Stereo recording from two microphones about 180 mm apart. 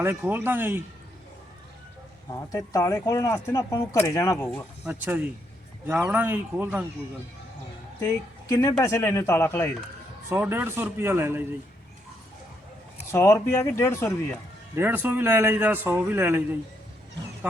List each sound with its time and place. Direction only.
0.0 s a man's voice: 10° right (ahead or behind)
2.5 s speech: 15° left (ahead or behind)
4.9 s a man's voice: 10° right (ahead or behind)
8.0 s a woman's voice: 20° left (ahead or behind)
10.2 s a man's voice: 10° right (ahead or behind)
13.1 s speech: 15° left (ahead or behind)
14.8 s a man's voice: 10° right (ahead or behind)